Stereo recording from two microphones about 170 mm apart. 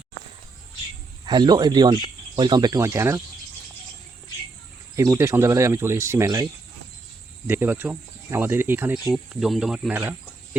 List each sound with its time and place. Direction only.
1.2 s speech: 25° right (ahead or behind)
4.9 s speech: 15° right (ahead or behind)
7.4 s speech: 10° right (ahead or behind)